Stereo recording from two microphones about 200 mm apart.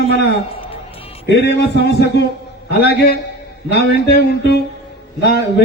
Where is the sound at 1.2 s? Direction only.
55° left (ahead or behind).